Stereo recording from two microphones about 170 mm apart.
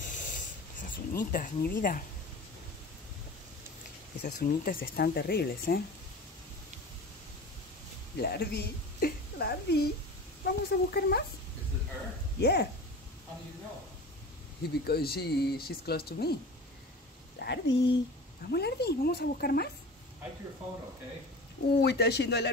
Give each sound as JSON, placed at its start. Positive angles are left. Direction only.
{"t": 0.1, "sound": "snort", "side_deg": 50}
{"t": 0.8, "sound": "speech", "side_deg": 50}
{"t": 4.2, "sound": "speech", "side_deg": 60}
{"t": 8.2, "sound": "a woman's voice", "side_deg": 70}
{"t": 12.4, "sound": "speech", "side_deg": 75}
{"t": 14.6, "sound": "speech", "side_deg": 65}
{"t": 17.4, "sound": "speech", "side_deg": 85}
{"t": 18.5, "sound": "speech", "side_deg": 75}
{"t": 21.7, "sound": "speech", "side_deg": 70}